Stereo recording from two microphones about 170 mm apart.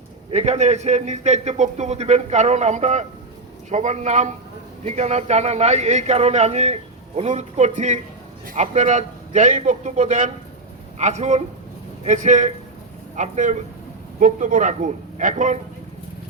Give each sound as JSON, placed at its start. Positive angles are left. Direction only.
{"t": 0.3, "sound": "a man's voice", "side_deg": -40}